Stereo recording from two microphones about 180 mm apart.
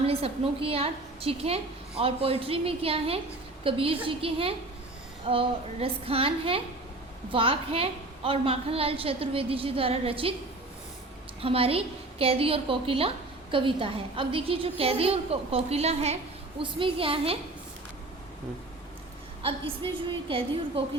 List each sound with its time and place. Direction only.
0.0 s a woman's voice: 35° right (ahead or behind)
11.3 s a woman's voice: 30° right (ahead or behind)
19.4 s a woman's voice: 30° right (ahead or behind)